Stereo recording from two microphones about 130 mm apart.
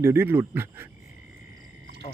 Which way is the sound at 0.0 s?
20° right (ahead or behind).